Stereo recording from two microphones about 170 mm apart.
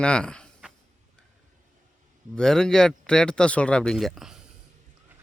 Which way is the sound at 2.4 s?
5° left (ahead or behind).